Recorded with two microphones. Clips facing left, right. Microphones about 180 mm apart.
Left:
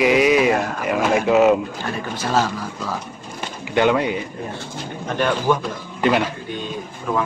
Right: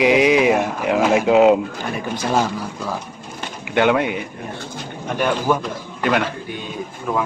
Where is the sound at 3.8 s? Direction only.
15° right (ahead or behind).